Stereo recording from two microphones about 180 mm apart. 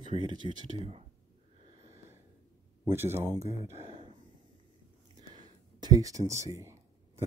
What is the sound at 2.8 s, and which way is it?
Speech, 15° right (ahead or behind).